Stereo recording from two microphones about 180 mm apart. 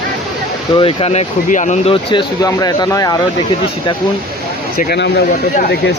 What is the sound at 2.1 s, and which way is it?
Speech, 20° left (ahead or behind).